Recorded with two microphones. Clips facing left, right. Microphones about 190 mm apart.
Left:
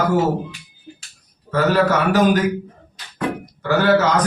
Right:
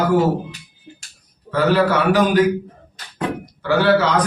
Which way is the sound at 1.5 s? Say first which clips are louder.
Even; 45° left (ahead or behind).